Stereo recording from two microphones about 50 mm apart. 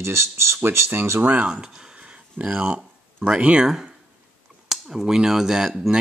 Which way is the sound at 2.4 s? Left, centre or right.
Right.